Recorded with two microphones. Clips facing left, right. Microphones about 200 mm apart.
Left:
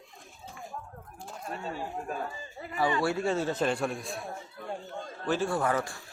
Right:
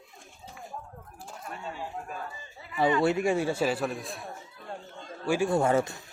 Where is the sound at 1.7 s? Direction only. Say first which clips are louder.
Left 3 dB; 40° left (ahead or behind).